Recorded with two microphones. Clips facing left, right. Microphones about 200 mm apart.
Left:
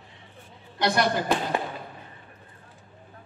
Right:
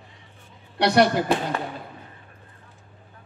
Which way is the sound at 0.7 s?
70° right (ahead or behind).